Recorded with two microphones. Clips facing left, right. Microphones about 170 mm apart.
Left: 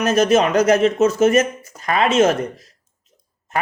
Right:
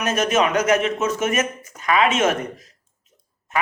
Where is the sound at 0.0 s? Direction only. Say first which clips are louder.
Left 5 dB; 35° left (ahead or behind).